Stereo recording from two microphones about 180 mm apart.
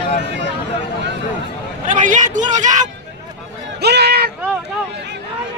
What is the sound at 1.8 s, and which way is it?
Speech, 45° right (ahead or behind).